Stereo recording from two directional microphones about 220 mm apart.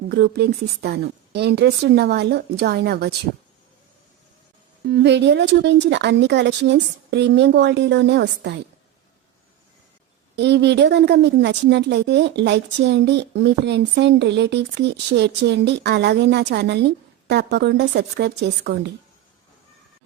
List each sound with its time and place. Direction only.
0.1 s a woman's voice: 50° right (ahead or behind)
4.9 s a woman's voice: 50° right (ahead or behind)
10.3 s a woman's voice: 50° right (ahead or behind)